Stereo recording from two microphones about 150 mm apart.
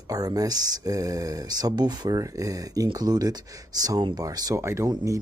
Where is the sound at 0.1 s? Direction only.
25° right (ahead or behind).